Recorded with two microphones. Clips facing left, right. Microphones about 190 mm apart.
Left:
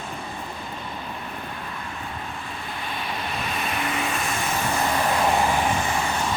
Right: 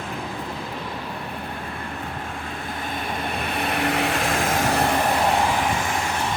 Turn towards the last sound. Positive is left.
turn(degrees=-75)  # may be behind; listen again after turning